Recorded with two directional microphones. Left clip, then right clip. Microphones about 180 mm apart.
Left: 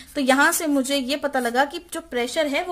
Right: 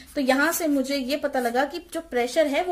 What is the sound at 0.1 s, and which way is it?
A woman's voice, 35° left (ahead or behind).